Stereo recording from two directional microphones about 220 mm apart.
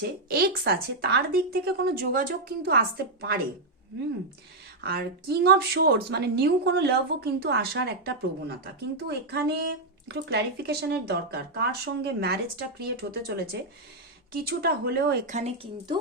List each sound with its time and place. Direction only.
0.3 s speech: 45° right (ahead or behind)
4.8 s speech: 45° right (ahead or behind)
15.4 s speech: 30° right (ahead or behind)